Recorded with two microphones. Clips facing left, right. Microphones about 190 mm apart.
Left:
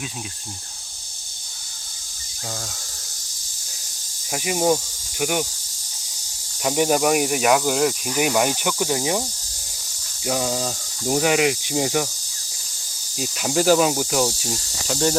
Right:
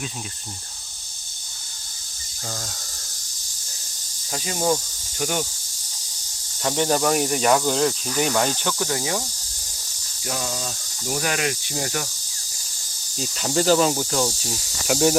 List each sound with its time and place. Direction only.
4.3 s speech: 15° left (ahead or behind)
6.6 s speech: 10° left (ahead or behind)
10.2 s speech: 20° left (ahead or behind)
13.1 s speech: 5° left (ahead or behind)
14.8 s cricket: 10° right (ahead or behind)